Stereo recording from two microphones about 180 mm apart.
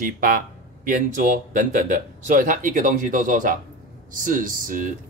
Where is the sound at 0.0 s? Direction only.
50° right (ahead or behind).